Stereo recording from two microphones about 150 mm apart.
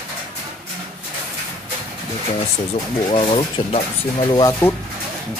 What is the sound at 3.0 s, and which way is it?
Speech, 40° left (ahead or behind).